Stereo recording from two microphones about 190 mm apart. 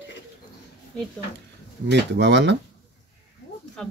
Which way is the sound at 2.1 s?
65° right (ahead or behind).